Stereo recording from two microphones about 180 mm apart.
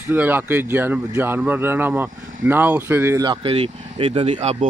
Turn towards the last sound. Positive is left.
turn(degrees=-30)  # may be behind; listen again after turning